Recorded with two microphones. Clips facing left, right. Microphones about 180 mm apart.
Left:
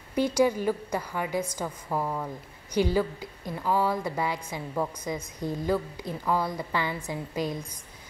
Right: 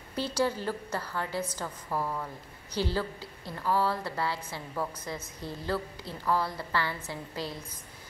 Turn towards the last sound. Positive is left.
turn(degrees=15)  # may be behind; listen again after turning